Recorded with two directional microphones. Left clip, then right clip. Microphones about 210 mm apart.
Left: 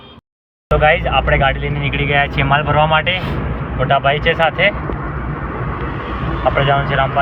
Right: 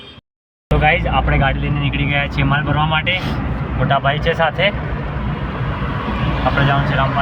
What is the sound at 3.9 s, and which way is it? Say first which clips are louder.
Speech: left 3 dB; 25° right (ahead or behind).